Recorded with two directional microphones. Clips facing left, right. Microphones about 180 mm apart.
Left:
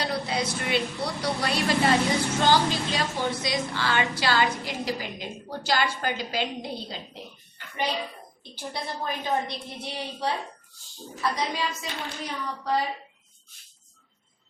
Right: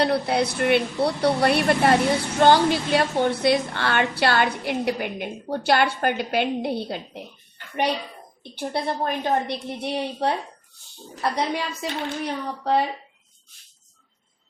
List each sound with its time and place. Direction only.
0.0 s a woman's voice: 60° right (ahead or behind)
8.5 s a woman's voice: 60° right (ahead or behind)